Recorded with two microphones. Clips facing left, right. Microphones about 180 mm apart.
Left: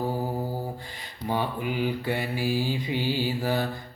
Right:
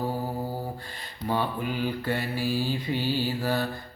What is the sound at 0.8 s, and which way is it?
Mantra, 15° left (ahead or behind).